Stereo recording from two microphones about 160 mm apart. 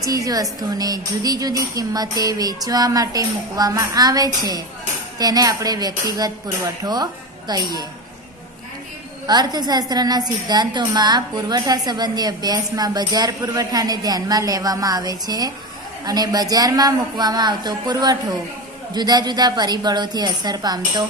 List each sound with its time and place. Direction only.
0.0 s a woman's voice: 20° right (ahead or behind)
9.2 s a woman's voice: 25° right (ahead or behind)